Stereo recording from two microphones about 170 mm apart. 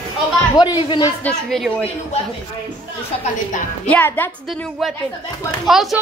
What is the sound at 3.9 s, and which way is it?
Speech, 10° left (ahead or behind).